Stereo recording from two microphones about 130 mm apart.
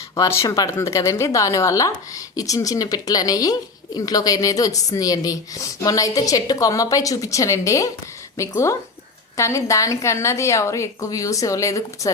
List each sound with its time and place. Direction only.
0.2 s a woman's voice: 25° left (ahead or behind)